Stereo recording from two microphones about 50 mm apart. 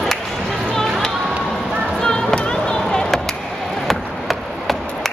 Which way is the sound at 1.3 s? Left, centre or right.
Right.